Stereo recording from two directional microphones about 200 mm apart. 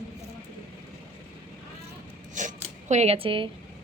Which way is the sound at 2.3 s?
40° right (ahead or behind).